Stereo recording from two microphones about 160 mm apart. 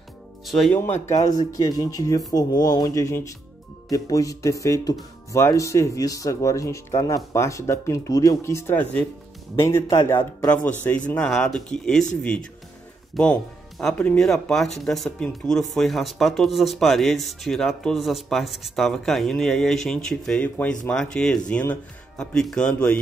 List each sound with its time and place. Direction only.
0.5 s speech: centre (ahead or behind)
0.7 s speech: 15° left (ahead or behind)
13.1 s speech: 5° left (ahead or behind)